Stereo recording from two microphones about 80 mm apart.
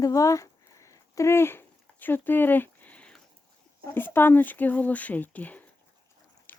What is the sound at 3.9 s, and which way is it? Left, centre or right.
Speech, left.